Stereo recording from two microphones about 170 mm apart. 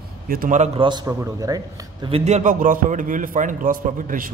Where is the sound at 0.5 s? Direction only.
30° right (ahead or behind).